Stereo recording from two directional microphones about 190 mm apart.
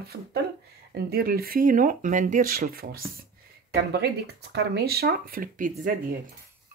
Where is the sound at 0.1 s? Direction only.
55° right (ahead or behind).